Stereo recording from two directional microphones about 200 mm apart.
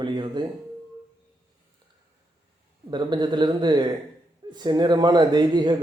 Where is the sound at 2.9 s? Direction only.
20° right (ahead or behind).